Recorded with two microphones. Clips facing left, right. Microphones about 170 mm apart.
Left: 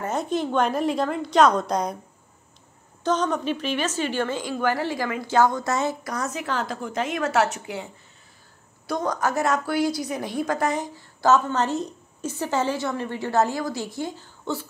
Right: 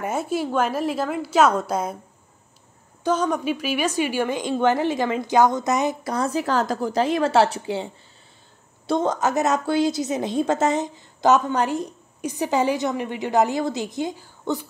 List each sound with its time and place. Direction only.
0.0 s a woman's voice: 5° right (ahead or behind)
3.0 s a woman's voice: 10° right (ahead or behind)
6.1 s a woman's voice: 30° right (ahead or behind); by 14.7 s 15° right (ahead or behind)